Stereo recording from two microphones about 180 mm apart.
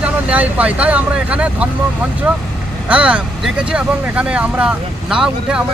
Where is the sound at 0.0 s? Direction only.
10° right (ahead or behind).